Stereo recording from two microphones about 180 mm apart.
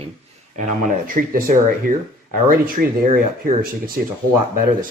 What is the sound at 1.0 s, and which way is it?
Speech, 50° right (ahead or behind).